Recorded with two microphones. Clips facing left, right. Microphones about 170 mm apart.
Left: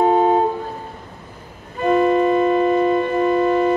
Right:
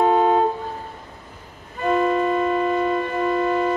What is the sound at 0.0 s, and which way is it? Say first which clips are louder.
Music: left 2 dB; 20° left (ahead or behind).